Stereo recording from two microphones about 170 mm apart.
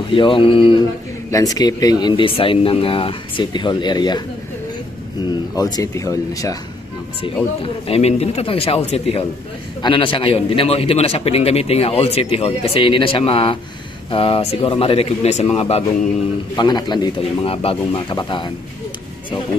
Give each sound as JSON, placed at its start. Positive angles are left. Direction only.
{"t": 0.1, "sound": "a man's voice", "side_deg": 30}
{"t": 5.6, "sound": "speech", "side_deg": 20}
{"t": 7.6, "sound": "a man's voice", "side_deg": 35}